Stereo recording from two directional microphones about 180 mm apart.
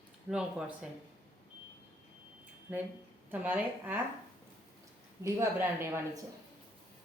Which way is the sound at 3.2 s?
10° right (ahead or behind).